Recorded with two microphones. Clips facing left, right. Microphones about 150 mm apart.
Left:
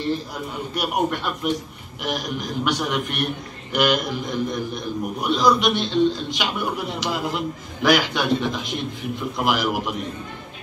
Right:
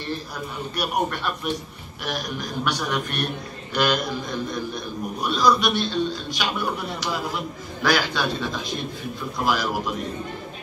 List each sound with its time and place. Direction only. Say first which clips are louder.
0.7 s a man's voice: left 2 dB; 20° left (ahead or behind)